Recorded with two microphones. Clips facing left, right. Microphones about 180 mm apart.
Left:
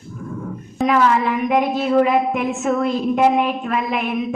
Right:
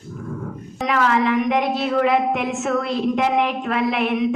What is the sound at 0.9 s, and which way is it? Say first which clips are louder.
A woman's voice: left 2 dB; 75° right (ahead or behind).